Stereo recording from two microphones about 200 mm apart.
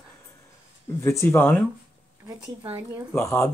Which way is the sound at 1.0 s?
15° left (ahead or behind).